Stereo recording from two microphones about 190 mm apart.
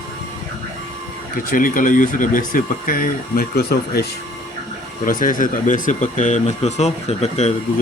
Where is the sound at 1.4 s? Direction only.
45° left (ahead or behind).